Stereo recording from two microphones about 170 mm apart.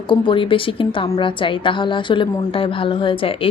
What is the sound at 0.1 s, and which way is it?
A woman's voice, 30° left (ahead or behind).